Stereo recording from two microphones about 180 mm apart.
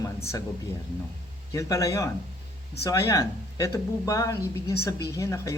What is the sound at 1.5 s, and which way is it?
Speech, 15° left (ahead or behind).